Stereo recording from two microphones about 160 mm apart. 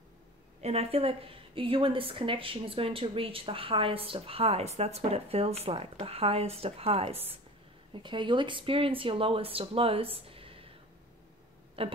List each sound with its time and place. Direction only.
0.6 s a woman's voice: 40° right (ahead or behind)
11.8 s a woman's voice: 35° right (ahead or behind)